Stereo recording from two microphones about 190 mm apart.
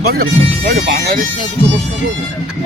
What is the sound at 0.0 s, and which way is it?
Speech, 55° right (ahead or behind).